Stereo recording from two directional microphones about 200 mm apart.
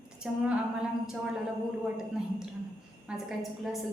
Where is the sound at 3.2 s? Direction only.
Centre (ahead or behind).